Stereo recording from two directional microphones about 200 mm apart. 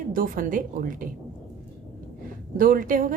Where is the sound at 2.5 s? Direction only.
45° right (ahead or behind).